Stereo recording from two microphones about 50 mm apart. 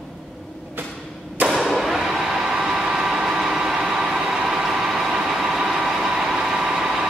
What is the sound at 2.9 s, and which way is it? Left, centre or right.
Vehicle, centre.